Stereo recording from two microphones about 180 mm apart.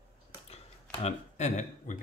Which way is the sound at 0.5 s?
35° left (ahead or behind).